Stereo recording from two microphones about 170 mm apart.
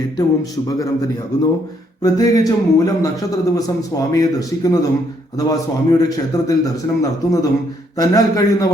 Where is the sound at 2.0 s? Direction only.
20° left (ahead or behind).